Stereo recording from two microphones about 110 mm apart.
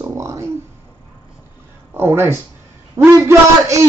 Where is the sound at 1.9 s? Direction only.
20° right (ahead or behind).